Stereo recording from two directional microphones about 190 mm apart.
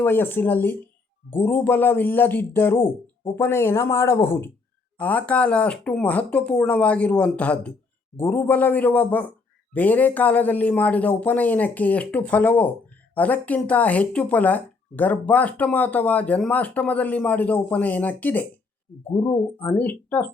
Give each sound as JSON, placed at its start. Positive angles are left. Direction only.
{"t": 0.0, "sound": "speech", "side_deg": 10}